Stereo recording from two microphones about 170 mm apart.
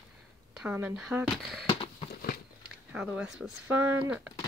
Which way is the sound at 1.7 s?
35° left (ahead or behind).